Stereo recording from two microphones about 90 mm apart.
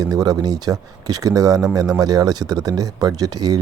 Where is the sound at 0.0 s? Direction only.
45° right (ahead or behind).